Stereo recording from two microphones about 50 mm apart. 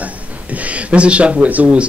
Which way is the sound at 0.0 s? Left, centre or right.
Right.